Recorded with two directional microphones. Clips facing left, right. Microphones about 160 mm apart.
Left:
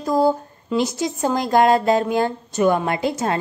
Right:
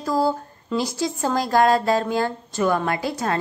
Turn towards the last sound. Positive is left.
turn(degrees=20)  # may be behind; listen again after turning